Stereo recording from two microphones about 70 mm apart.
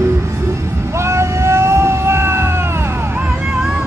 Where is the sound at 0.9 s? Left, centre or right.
Right.